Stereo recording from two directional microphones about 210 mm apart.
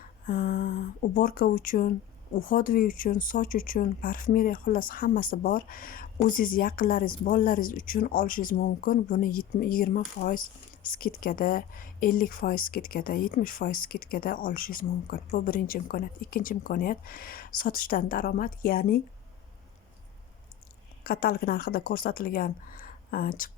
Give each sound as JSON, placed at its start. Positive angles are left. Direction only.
{"t": 0.3, "sound": "a sound", "side_deg": 45}
{"t": 1.1, "sound": "speech", "side_deg": 40}
{"t": 21.0, "sound": "speech", "side_deg": 45}